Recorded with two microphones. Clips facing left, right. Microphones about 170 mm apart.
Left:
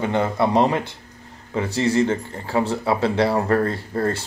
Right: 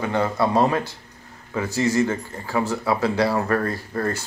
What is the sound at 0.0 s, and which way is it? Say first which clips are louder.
Speech: left 1 dB; 20° left (ahead or behind).